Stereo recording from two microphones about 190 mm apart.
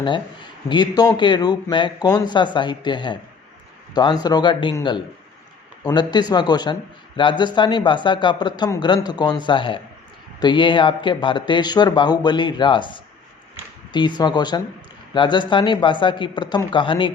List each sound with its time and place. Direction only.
0.7 s speech: 20° left (ahead or behind)
14.2 s speech: 20° left (ahead or behind)